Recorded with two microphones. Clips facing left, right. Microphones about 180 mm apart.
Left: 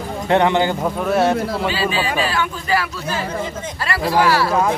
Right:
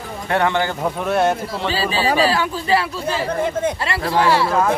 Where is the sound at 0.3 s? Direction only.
20° left (ahead or behind).